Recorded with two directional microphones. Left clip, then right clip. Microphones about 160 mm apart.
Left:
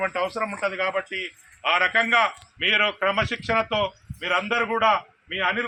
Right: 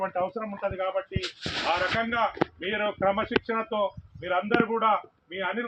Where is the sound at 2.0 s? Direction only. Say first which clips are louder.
Left 6 dB; 45° right (ahead or behind).